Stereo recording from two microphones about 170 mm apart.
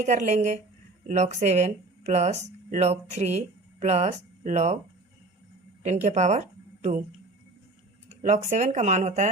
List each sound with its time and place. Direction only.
0.0 s speech: 45° right (ahead or behind)
5.8 s speech: 40° right (ahead or behind)
8.1 s speech: 45° right (ahead or behind)